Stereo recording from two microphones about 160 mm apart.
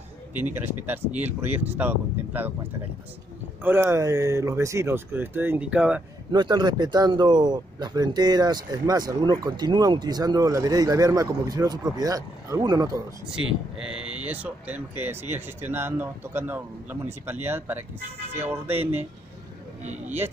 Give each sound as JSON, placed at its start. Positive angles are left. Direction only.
{"t": 0.3, "sound": "speech", "side_deg": -10}
{"t": 3.6, "sound": "speech", "side_deg": -15}
{"t": 6.3, "sound": "speech", "side_deg": -30}
{"t": 13.3, "sound": "speech", "side_deg": -5}
{"t": 18.7, "sound": "speech", "side_deg": -40}